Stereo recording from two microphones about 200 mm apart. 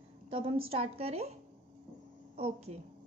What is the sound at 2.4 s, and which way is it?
Speech, 30° right (ahead or behind).